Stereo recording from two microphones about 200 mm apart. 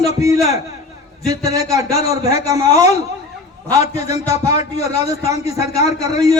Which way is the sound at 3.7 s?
20° right (ahead or behind).